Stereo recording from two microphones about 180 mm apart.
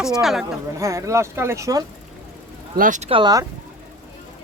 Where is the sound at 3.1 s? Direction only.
25° right (ahead or behind).